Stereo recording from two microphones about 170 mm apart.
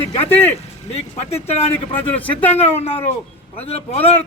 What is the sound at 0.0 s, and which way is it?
Speech, 35° left (ahead or behind).